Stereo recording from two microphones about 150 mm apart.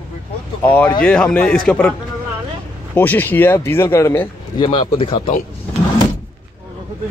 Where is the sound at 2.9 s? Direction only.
10° left (ahead or behind).